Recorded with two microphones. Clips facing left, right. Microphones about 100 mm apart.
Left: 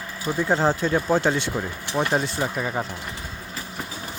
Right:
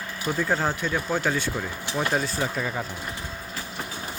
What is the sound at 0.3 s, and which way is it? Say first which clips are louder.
Speech: left 5 dB; 25° left (ahead or behind).